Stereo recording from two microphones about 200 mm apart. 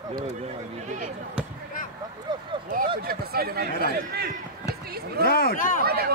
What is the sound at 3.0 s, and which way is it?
A man's voice, 50° right (ahead or behind).